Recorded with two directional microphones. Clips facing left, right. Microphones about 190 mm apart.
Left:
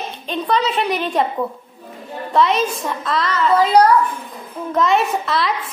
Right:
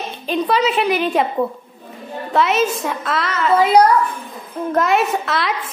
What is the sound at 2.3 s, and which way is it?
A woman's voice, 5° right (ahead or behind).